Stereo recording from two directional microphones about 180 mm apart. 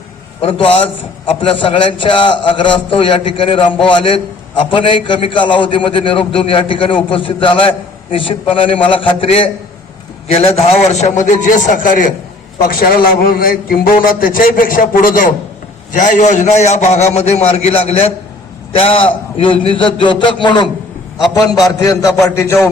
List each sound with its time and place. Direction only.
0.4 s a man's voice: 30° left (ahead or behind); by 22.7 s 15° left (ahead or behind)